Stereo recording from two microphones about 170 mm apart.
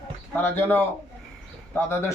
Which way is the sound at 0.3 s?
10° left (ahead or behind).